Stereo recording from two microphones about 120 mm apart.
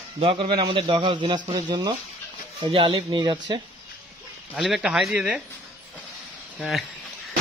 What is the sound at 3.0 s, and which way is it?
Speech, 40° right (ahead or behind).